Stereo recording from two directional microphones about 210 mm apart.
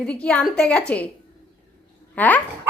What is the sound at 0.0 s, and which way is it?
A woman's voice, 5° left (ahead or behind).